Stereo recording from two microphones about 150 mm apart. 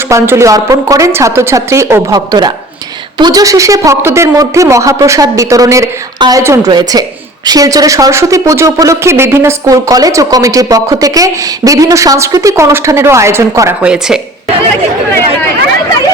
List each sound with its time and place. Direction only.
0.1 s a woman's voice: 20° right (ahead or behind)
13.8 s speech: 5° right (ahead or behind)